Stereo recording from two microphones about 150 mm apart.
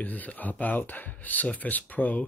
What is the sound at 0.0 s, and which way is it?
Speech, 10° left (ahead or behind).